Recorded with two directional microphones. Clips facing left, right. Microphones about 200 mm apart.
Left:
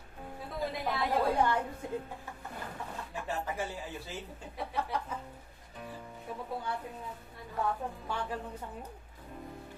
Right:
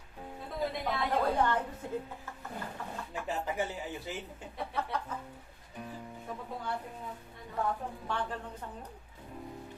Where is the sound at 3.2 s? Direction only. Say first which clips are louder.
Right 2 dB; 15° right (ahead or behind).